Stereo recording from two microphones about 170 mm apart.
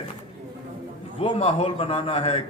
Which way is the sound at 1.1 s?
35° left (ahead or behind).